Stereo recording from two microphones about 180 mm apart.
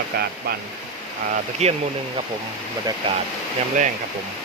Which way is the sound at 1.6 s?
35° right (ahead or behind).